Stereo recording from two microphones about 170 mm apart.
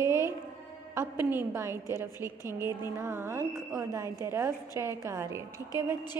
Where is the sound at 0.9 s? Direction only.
15° right (ahead or behind).